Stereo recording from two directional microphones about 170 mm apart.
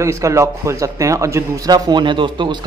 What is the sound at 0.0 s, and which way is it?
A man's voice, 15° right (ahead or behind).